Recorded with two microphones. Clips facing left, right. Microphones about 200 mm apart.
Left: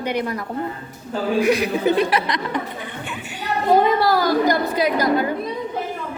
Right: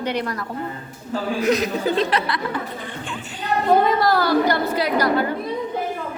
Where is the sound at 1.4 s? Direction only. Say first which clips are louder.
Left 1 dB; 10° left (ahead or behind).